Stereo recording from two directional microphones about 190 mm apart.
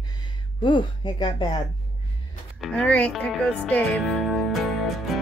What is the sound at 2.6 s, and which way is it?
Speech, 5° left (ahead or behind).